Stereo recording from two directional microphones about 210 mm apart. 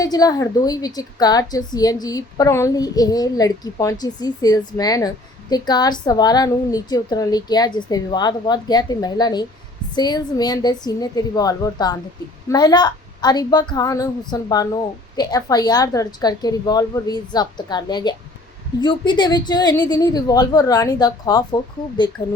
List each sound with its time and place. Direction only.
0.0 s a woman's voice: 15° left (ahead or behind)